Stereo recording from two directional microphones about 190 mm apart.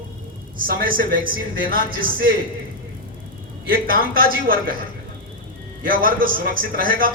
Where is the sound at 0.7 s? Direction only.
50° right (ahead or behind).